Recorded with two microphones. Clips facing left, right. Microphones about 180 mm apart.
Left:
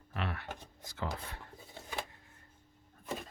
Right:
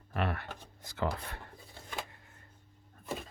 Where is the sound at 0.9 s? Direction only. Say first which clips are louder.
Right 5 dB; 60° right (ahead or behind).